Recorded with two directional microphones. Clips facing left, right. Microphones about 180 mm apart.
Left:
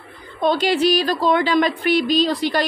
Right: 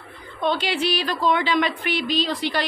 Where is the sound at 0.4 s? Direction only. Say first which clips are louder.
Left 6 dB; 40° left (ahead or behind).